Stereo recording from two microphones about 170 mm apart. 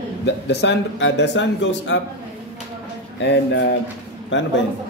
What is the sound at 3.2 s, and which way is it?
Speech, 85° left.